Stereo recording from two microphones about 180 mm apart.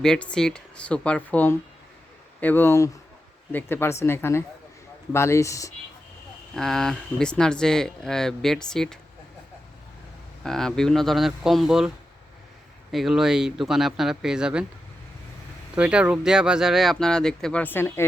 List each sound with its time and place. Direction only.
0.0 s speech: 5° left (ahead or behind)
6.6 s speech: centre (ahead or behind)
10.4 s speech: 5° left (ahead or behind)
12.9 s speech: centre (ahead or behind)
15.7 s speech: 5° right (ahead or behind); by 18.0 s 10° left (ahead or behind)